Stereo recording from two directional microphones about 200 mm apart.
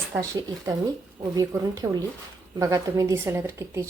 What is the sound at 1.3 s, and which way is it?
A woman's voice, 20° right (ahead or behind).